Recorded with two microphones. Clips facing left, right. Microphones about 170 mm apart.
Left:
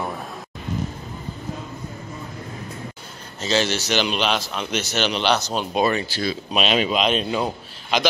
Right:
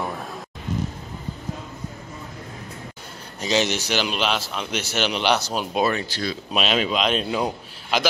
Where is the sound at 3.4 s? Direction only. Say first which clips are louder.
Even; 15° right (ahead or behind).